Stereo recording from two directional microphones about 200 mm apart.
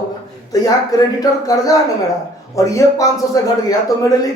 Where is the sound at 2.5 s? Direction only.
15° left (ahead or behind).